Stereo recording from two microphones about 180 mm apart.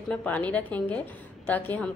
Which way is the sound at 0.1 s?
10° left (ahead or behind).